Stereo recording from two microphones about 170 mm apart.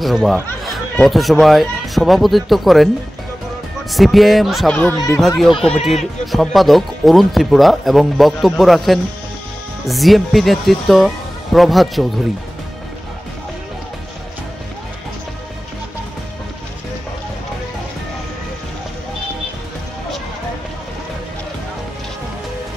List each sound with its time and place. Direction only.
0.0 s speech: centre (ahead or behind)
3.9 s speech: centre (ahead or behind)
4.9 s speech: 20° left (ahead or behind)
5.7 s speech: centre (ahead or behind)